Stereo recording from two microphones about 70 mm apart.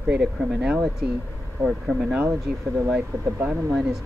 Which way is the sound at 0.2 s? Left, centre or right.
Centre.